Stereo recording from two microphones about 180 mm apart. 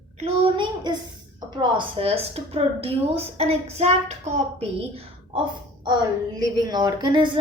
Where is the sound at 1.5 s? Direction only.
25° right (ahead or behind).